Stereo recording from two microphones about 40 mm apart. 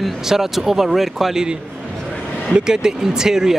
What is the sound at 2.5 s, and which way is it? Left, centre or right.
Speech, centre.